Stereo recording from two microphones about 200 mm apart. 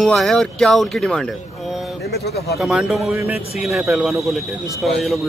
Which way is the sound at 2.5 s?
5° right (ahead or behind).